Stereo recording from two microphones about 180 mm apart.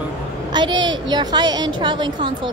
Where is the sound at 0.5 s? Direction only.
25° right (ahead or behind).